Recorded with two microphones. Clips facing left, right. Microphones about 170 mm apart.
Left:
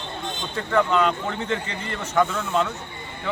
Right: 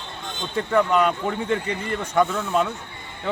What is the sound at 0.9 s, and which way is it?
Speech, 10° right (ahead or behind).